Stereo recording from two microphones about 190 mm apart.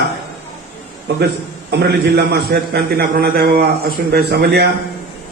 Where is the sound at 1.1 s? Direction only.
60° right (ahead or behind).